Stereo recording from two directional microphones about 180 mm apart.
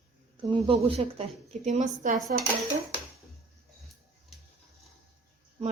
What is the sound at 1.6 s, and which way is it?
Speech, 40° right (ahead or behind).